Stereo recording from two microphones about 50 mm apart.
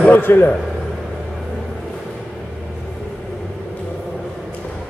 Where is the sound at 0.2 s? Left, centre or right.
Left.